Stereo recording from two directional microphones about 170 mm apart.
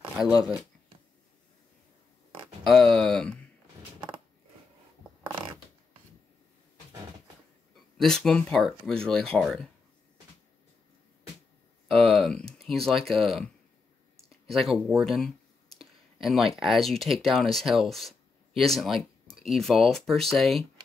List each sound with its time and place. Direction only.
2.6 s speech: centre (ahead or behind)
8.0 s speech: 5° left (ahead or behind)
11.9 s speech: 5° left (ahead or behind)